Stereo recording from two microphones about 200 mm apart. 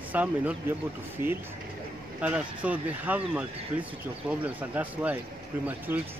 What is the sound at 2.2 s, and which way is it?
Speech, 5° right (ahead or behind).